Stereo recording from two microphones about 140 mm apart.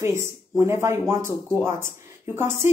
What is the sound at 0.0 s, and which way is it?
A woman's voice, 20° right (ahead or behind).